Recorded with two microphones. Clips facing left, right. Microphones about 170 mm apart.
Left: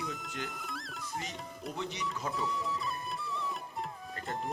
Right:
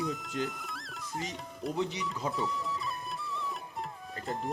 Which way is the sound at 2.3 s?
Centre (ahead or behind).